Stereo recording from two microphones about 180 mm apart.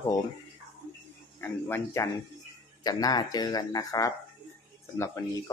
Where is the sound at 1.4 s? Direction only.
15° left (ahead or behind).